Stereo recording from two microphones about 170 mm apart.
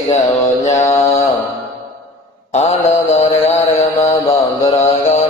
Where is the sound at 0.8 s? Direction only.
20° left (ahead or behind).